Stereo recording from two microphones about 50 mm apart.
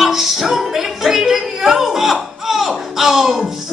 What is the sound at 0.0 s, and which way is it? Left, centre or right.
Music, centre.